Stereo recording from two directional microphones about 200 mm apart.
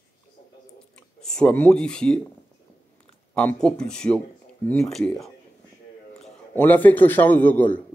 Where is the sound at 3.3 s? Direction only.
5° left (ahead or behind).